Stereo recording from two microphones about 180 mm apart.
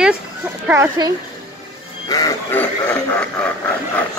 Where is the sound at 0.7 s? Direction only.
20° right (ahead or behind).